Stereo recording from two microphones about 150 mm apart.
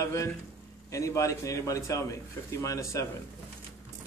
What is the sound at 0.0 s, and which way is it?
A man's voice, 20° left (ahead or behind).